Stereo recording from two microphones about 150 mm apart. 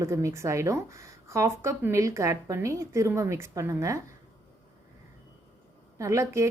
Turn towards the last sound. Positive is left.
turn(degrees=-20)  # may be behind; listen again after turning